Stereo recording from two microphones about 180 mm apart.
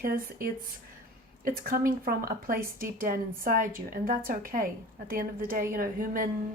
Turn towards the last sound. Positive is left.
turn(degrees=-50)  # may be behind; listen again after turning